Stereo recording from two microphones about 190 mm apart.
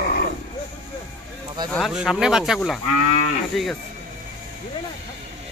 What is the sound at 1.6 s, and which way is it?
Speech, centre (ahead or behind).